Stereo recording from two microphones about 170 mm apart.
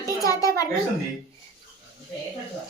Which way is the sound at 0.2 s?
20° left (ahead or behind).